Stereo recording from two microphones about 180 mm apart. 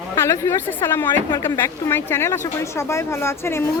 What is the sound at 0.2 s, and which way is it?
Speech, 15° left (ahead or behind).